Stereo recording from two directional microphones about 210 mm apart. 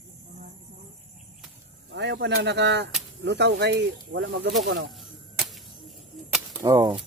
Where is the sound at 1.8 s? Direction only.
55° right (ahead or behind).